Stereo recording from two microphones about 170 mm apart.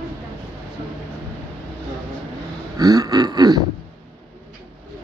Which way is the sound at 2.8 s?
20° right (ahead or behind).